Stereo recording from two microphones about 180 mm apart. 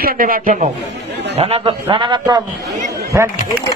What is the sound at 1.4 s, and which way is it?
A man's voice, 35° right (ahead or behind).